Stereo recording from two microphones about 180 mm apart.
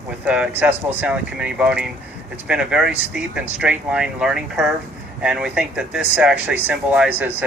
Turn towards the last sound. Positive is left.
turn(degrees=-5)  # may be behind; listen again after turning